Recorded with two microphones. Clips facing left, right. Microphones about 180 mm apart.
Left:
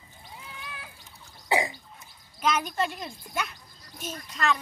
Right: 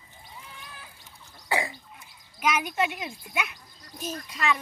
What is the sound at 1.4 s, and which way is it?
Gargling, 20° left (ahead or behind).